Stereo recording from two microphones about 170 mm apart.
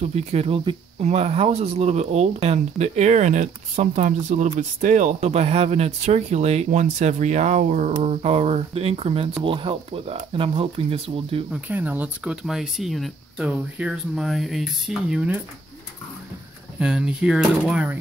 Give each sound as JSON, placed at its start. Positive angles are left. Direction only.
{"t": 0.1, "sound": "speech", "side_deg": -40}
{"t": 11.5, "sound": "speech", "side_deg": -10}
{"t": 16.8, "sound": "speech", "side_deg": -5}